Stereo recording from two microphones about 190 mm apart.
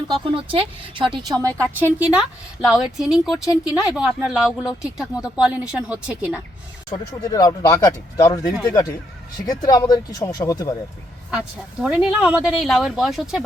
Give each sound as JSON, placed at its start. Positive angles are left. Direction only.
{"t": 0.1, "sound": "speech", "side_deg": -25}
{"t": 1.7, "sound": "speech", "side_deg": -10}
{"t": 6.9, "sound": "speech", "side_deg": 20}
{"t": 11.8, "sound": "speech", "side_deg": -5}